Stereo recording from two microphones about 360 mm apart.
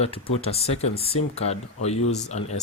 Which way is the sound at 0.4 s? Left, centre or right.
Centre.